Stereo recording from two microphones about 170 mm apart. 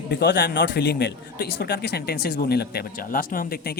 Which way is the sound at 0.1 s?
75° left (ahead or behind).